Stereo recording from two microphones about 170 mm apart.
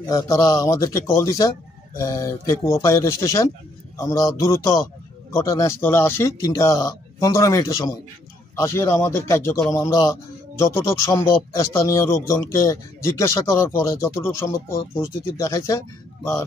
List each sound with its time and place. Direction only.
0.0 s speech: 20° left (ahead or behind)